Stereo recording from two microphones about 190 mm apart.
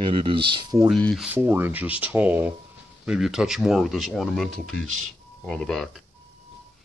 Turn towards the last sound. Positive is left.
turn(degrees=0)  # may be behind; listen again after turning